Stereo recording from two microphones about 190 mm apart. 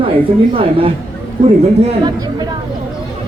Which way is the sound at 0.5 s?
30° right (ahead or behind).